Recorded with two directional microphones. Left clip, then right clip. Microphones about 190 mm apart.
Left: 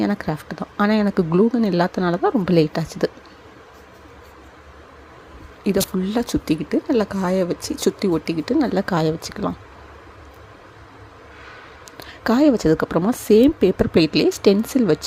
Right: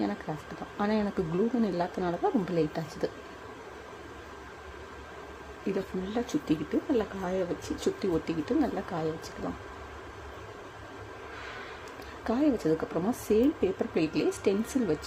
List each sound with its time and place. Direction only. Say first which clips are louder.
0.0 s speech: left 10 dB; 30° left (ahead or behind)
5.6 s speech: left 11 dB; 35° left (ahead or behind)
12.2 s speech: left 11 dB; 35° left (ahead or behind)